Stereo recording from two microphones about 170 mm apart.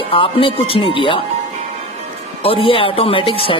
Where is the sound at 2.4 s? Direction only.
30° left (ahead or behind).